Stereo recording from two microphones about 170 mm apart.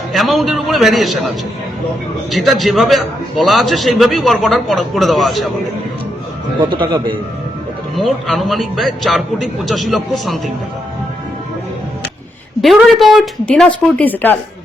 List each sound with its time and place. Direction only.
0.1 s a man's voice: centre (ahead or behind)
2.3 s a man's voice: centre (ahead or behind)
6.6 s a man's voice: 30° right (ahead or behind)
7.9 s a man's voice: centre (ahead or behind)
12.6 s a man's voice: centre (ahead or behind)